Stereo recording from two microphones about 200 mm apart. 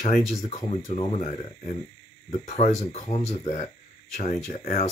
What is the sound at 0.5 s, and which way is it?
Speech, 30° left (ahead or behind).